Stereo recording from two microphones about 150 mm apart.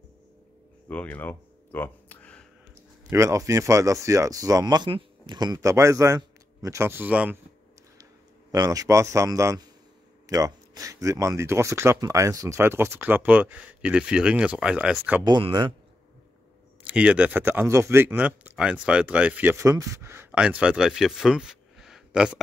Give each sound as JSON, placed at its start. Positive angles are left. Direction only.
{"t": 0.8, "sound": "a sound", "side_deg": 10}
{"t": 3.1, "sound": "speech", "side_deg": -20}
{"t": 8.0, "sound": "a man's voice", "side_deg": -25}
{"t": 15.2, "sound": "speech", "side_deg": -30}
{"t": 16.8, "sound": "speech", "side_deg": -10}